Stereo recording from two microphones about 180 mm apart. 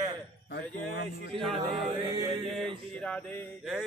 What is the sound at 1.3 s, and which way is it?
Speech, centre (ahead or behind).